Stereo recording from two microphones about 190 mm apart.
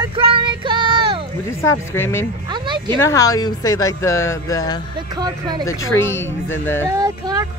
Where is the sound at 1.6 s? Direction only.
15° left (ahead or behind).